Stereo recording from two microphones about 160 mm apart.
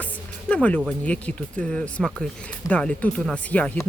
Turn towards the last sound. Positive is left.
turn(degrees=10)  # may be behind; listen again after turning